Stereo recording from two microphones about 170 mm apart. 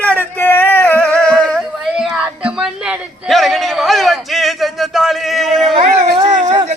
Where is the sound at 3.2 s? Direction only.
Centre (ahead or behind).